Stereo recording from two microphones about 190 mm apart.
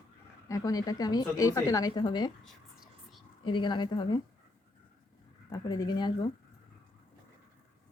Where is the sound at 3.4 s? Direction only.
25° left (ahead or behind).